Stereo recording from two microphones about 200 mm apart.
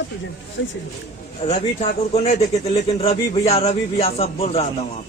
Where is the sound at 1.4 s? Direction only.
35° left (ahead or behind).